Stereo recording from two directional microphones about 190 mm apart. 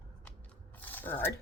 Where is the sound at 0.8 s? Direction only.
10° left (ahead or behind).